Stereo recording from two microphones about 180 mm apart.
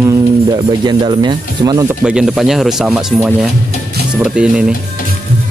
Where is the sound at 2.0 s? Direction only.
5° right (ahead or behind).